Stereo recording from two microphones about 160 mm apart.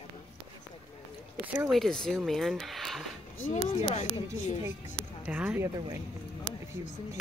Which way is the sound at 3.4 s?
45° left (ahead or behind).